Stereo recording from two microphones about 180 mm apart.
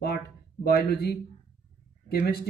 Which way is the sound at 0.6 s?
60° left (ahead or behind).